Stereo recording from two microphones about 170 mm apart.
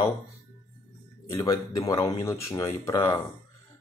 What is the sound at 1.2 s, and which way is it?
Speech, 20° left (ahead or behind).